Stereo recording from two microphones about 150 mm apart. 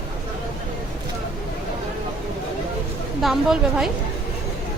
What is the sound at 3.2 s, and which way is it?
Speech, centre (ahead or behind).